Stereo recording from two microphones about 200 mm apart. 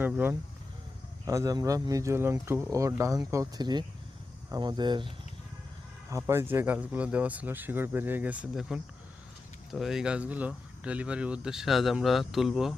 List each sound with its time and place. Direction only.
0.0 s speech: 10° right (ahead or behind)